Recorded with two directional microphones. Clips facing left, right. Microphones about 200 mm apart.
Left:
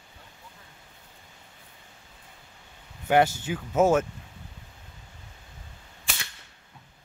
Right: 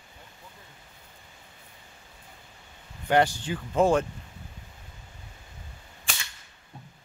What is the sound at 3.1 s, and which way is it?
Speech, 10° left (ahead or behind).